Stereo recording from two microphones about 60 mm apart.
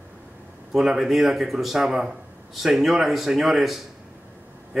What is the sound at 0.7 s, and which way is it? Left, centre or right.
A man's voice, centre.